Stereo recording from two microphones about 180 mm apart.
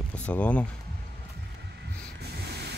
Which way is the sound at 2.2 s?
65° right (ahead or behind).